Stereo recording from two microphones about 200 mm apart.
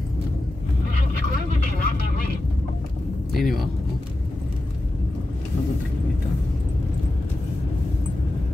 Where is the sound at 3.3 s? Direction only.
Centre (ahead or behind).